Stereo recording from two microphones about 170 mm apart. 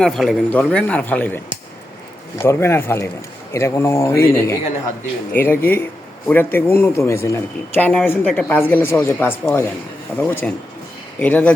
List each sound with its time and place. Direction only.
0.0 s speech: centre (ahead or behind)